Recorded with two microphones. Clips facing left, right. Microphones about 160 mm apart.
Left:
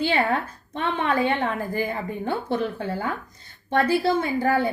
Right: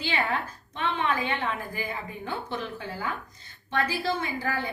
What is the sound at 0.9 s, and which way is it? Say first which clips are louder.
A woman's voice: left 7 dB; 50° left (ahead or behind).